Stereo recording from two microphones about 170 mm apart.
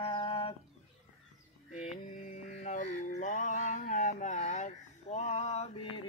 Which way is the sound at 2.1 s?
45° left (ahead or behind).